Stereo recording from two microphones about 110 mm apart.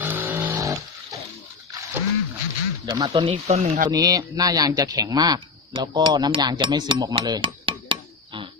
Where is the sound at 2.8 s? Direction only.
35° right (ahead or behind).